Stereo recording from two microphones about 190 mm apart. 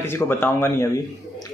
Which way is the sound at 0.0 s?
10° left (ahead or behind).